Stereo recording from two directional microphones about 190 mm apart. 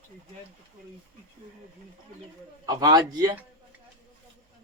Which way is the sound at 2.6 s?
20° right (ahead or behind).